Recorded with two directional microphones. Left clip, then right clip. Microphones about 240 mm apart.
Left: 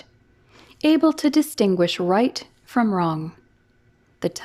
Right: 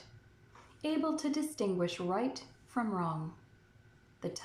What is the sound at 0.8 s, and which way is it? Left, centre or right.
A woman's voice, left.